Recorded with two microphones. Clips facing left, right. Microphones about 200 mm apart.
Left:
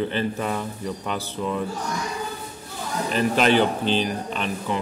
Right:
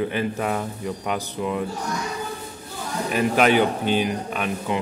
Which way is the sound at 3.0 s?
10° right (ahead or behind).